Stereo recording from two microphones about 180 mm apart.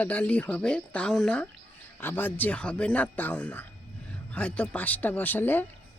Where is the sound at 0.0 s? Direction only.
10° left (ahead or behind).